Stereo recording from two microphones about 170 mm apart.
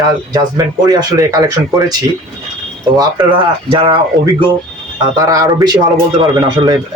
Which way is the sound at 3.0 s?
30° right (ahead or behind).